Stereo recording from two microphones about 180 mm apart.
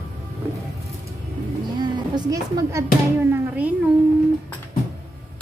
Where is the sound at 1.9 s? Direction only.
20° right (ahead or behind).